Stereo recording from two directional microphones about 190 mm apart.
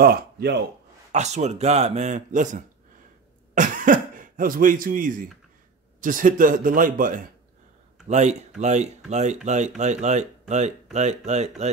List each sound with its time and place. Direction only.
0.0 s speech: 55° right (ahead or behind)
1.1 s a man's voice: 35° right (ahead or behind)